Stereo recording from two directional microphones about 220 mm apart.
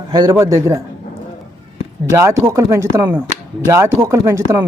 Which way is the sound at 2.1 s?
15° right (ahead or behind).